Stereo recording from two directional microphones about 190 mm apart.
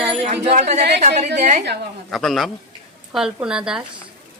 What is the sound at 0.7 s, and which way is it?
Speech, 60° right (ahead or behind).